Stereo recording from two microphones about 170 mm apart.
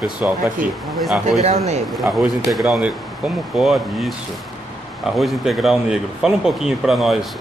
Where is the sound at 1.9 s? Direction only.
Centre (ahead or behind).